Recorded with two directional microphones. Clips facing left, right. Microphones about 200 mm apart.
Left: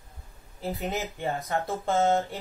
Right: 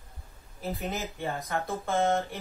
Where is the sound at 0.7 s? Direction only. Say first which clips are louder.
Left 3 dB; 15° left (ahead or behind).